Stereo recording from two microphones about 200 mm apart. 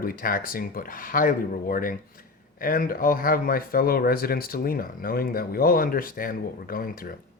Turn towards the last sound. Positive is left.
turn(degrees=45)  # may be behind; listen again after turning